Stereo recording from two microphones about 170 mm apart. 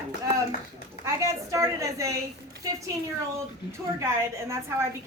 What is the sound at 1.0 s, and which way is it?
A woman's voice, 20° right (ahead or behind).